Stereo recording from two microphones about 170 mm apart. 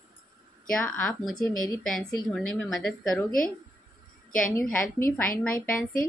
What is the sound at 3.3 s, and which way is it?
A woman's voice, 55° left (ahead or behind).